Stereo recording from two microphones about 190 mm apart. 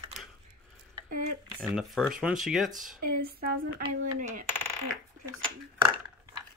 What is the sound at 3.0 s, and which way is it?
Speech, 50° right (ahead or behind).